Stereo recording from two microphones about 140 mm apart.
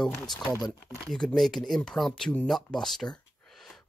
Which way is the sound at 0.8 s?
5° left (ahead or behind).